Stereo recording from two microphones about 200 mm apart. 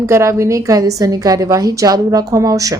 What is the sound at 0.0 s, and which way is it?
A woman's voice, 15° right (ahead or behind).